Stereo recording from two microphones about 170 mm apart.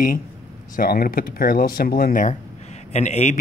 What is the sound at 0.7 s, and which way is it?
Speech, 60° left (ahead or behind).